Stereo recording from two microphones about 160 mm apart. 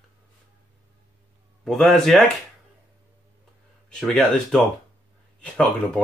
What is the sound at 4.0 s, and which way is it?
Speech, centre (ahead or behind).